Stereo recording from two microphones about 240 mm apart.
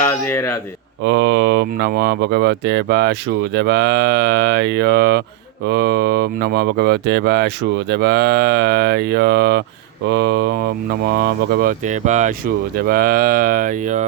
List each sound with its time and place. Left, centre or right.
0.1 s speech: centre
1.0 s speech: right